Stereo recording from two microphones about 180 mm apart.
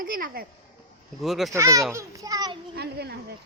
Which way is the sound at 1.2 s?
Centre (ahead or behind).